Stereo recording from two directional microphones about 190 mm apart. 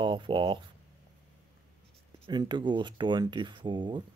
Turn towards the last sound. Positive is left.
turn(degrees=-25)  # may be behind; listen again after turning